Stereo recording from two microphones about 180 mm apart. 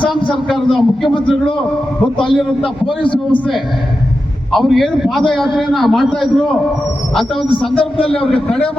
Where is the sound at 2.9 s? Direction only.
30° left (ahead or behind).